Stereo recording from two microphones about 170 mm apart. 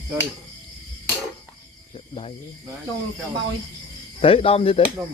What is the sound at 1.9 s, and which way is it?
Speech, 35° left (ahead or behind).